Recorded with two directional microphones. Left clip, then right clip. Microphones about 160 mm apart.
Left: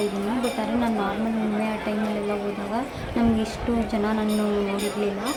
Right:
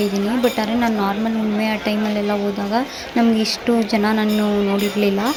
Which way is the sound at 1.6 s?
30° right (ahead or behind).